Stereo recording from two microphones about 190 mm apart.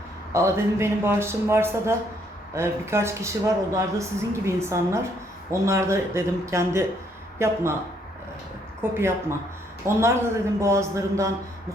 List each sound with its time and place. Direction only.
0.3 s speech: 15° right (ahead or behind)
8.8 s speech: 15° right (ahead or behind)